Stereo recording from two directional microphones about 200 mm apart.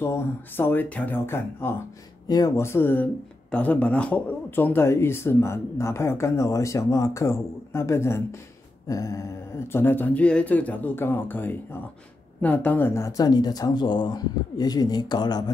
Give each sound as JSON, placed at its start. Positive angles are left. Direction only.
{"t": 0.0, "sound": "speech", "side_deg": 10}